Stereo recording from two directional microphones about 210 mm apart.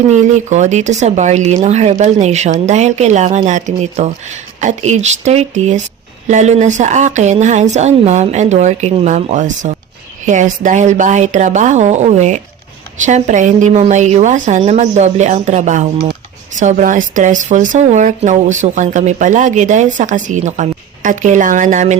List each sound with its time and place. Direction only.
0.1 s speech: 35° right (ahead or behind)